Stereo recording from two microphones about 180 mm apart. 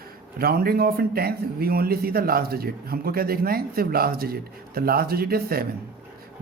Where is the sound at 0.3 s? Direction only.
55° right (ahead or behind).